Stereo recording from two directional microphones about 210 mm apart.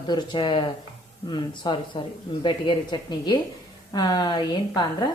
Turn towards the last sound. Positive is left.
turn(degrees=20)  # may be behind; listen again after turning